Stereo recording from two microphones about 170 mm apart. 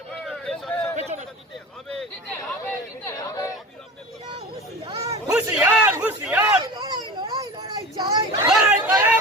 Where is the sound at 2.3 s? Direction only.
15° left (ahead or behind).